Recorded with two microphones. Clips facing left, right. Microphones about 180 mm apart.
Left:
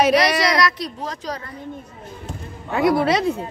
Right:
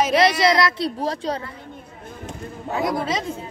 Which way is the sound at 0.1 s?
25° right (ahead or behind).